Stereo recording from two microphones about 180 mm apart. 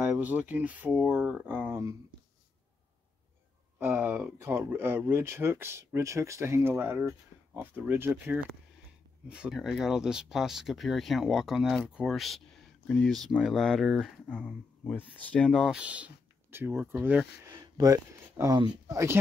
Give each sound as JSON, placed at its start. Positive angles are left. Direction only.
{"t": 0.0, "sound": "speech", "side_deg": -10}
{"t": 3.8, "sound": "speech", "side_deg": -15}
{"t": 17.5, "sound": "speech", "side_deg": -20}